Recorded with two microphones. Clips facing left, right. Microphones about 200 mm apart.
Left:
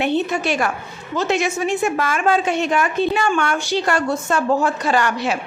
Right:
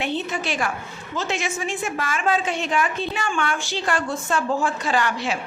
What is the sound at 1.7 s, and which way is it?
Speech, 45° left (ahead or behind).